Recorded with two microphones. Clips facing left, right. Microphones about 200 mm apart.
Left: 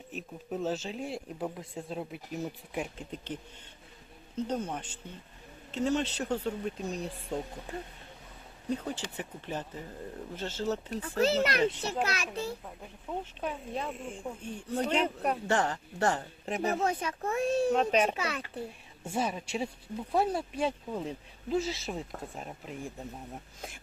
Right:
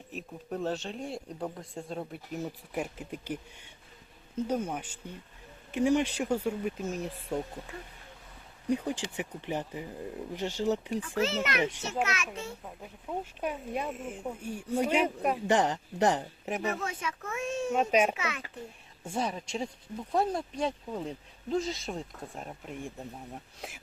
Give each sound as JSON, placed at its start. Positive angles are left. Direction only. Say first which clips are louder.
{"t": 0.1, "sound": "speech", "louder": "even", "side_deg": 0}
{"t": 7.7, "sound": "speech", "louder": "left 5 dB", "side_deg": 35}
{"t": 8.7, "sound": "speech", "louder": "right 4 dB", "side_deg": -15}
{"t": 11.0, "sound": "speech", "louder": "left 3 dB", "side_deg": 35}
{"t": 13.1, "sound": "speech", "louder": "right 1 dB", "side_deg": 0}
{"t": 13.4, "sound": "speech", "louder": "right 3 dB", "side_deg": -10}
{"t": 16.6, "sound": "speech", "louder": "left 7 dB", "side_deg": 35}
{"t": 17.7, "sound": "speech", "louder": "right 1 dB", "side_deg": -10}
{"t": 18.1, "sound": "speech", "louder": "left 1 dB", "side_deg": 35}
{"t": 19.0, "sound": "speech", "louder": "left 1 dB", "side_deg": 5}